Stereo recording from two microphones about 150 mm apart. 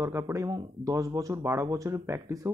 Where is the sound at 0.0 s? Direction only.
20° right (ahead or behind).